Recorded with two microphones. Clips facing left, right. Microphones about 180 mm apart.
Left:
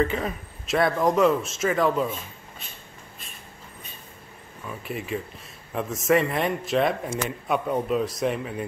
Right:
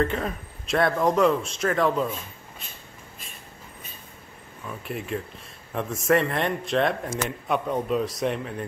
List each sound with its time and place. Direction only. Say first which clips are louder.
0.0 s speech: left 1 dB; centre (ahead or behind)
4.6 s speech: even; centre (ahead or behind)